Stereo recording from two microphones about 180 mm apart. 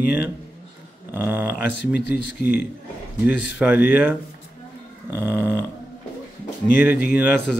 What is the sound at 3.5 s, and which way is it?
Speech, 10° right (ahead or behind).